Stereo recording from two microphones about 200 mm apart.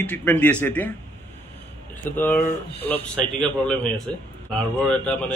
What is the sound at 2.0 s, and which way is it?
A man's voice, 10° left (ahead or behind).